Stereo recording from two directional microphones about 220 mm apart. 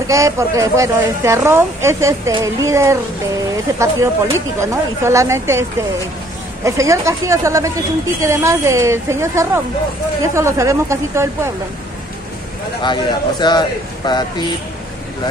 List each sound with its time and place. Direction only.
0.1 s a woman's voice: 15° right (ahead or behind)
12.8 s a man's voice: 20° left (ahead or behind)